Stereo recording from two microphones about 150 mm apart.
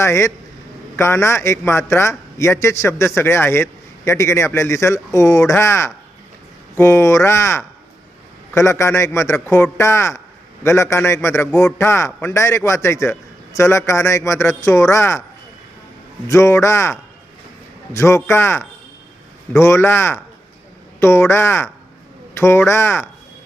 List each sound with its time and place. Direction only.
0.0 s a man's voice: 20° left (ahead or behind)
16.3 s a man's voice: 20° left (ahead or behind)